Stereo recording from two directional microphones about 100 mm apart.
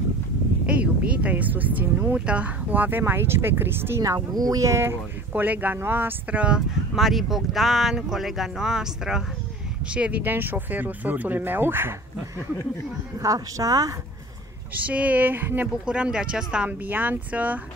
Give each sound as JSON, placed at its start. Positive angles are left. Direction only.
{"t": 0.7, "sound": "speech", "side_deg": -15}
{"t": 4.0, "sound": "speech", "side_deg": -40}
{"t": 5.3, "sound": "speech", "side_deg": -15}
{"t": 13.2, "sound": "speech", "side_deg": -35}
{"t": 14.7, "sound": "speech", "side_deg": -15}